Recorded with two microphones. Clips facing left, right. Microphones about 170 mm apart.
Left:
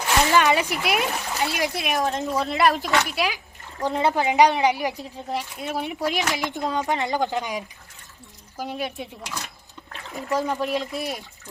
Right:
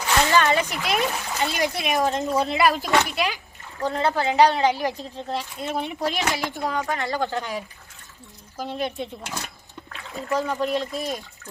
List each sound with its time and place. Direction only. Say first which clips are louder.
0.3 s speech: left 1 dB; 15° left (ahead or behind)
10.1 s speech: even; 15° left (ahead or behind)